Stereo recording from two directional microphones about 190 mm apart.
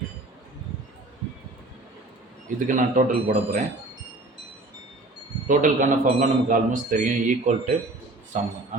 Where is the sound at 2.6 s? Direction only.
45° right (ahead or behind).